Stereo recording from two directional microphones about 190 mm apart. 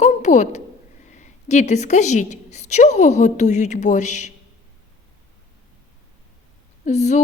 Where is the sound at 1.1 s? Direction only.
40° left (ahead or behind).